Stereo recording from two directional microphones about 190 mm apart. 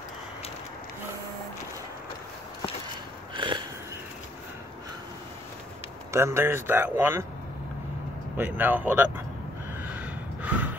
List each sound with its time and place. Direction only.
3.3 s wheeze: 25° right (ahead or behind)
6.1 s speech: 15° right (ahead or behind)
8.4 s speech: 10° right (ahead or behind)
9.8 s gasp: 10° right (ahead or behind)